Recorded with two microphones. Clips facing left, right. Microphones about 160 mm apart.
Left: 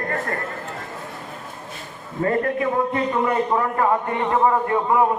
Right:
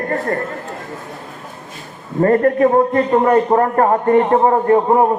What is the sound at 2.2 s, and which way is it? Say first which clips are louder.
A man's voice: right 9 dB; 50° right (ahead or behind).